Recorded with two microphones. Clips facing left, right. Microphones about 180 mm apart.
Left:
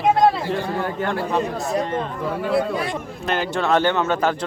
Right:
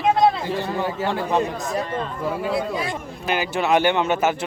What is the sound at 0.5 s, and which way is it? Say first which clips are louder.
Speech: even; 5° right (ahead or behind).